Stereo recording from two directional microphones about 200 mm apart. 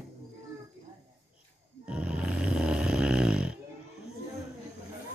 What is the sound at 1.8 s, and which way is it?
Snoring, 5° right (ahead or behind).